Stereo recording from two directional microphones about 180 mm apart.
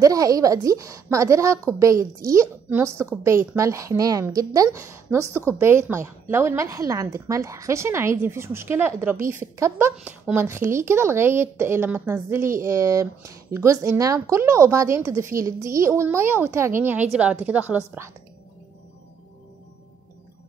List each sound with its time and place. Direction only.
0.0 s a woman's voice: 20° right (ahead or behind)